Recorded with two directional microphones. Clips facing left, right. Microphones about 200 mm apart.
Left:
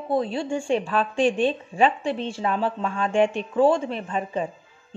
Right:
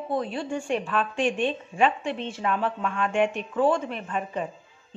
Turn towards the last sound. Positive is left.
turn(degrees=35)  # may be behind; listen again after turning